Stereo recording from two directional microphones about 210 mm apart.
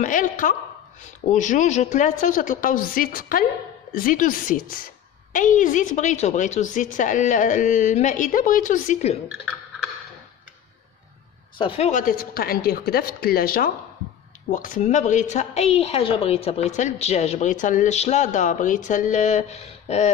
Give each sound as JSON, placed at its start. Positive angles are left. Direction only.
{"t": 0.0, "sound": "a woman's voice", "side_deg": 40}
{"t": 11.5, "sound": "a woman's voice", "side_deg": 25}